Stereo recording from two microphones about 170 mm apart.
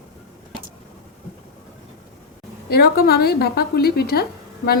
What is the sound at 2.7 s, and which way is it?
A woman's voice, 65° left (ahead or behind).